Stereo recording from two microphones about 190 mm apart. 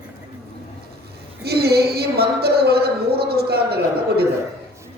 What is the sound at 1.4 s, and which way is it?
Speech, 55° right (ahead or behind).